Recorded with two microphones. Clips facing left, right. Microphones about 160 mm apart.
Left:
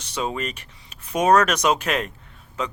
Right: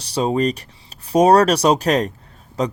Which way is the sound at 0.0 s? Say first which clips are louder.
Right 9 dB; 35° right (ahead or behind).